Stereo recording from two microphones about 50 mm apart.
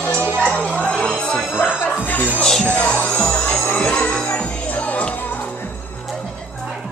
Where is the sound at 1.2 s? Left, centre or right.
Left.